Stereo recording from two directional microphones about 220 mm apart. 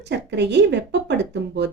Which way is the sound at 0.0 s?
50° right (ahead or behind).